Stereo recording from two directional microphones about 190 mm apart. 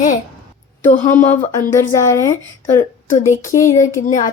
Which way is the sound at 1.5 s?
15° left (ahead or behind).